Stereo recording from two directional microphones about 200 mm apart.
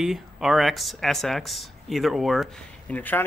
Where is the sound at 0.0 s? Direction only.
Centre (ahead or behind).